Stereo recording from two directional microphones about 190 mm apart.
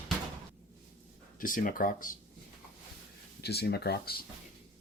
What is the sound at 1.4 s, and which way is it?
Speech, 45° left (ahead or behind).